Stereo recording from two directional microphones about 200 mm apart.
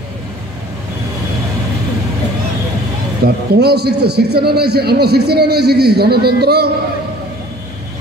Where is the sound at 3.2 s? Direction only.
55° right (ahead or behind).